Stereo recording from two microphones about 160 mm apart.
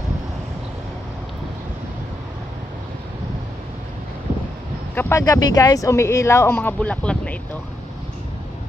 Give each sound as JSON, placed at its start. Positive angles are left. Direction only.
{"t": 4.9, "sound": "speech", "side_deg": 20}